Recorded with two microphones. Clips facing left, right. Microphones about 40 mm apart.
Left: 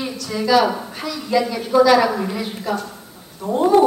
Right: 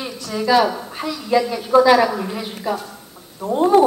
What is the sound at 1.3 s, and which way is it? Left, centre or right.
Speech, centre.